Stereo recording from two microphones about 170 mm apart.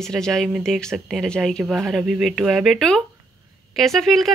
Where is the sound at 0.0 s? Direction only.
Centre (ahead or behind).